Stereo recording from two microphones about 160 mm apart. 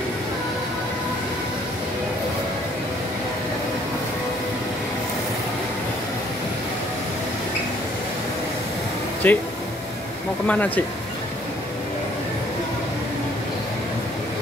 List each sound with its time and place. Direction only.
9.2 s speech: 10° left (ahead or behind)
10.4 s speech: 10° left (ahead or behind)